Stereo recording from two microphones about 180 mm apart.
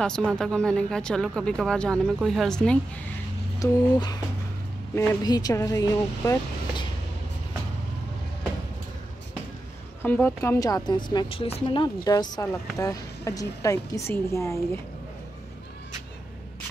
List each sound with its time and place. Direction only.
0.0 s speech: 5° left (ahead or behind)
3.5 s speech: 20° left (ahead or behind)
10.0 s speech: 10° left (ahead or behind)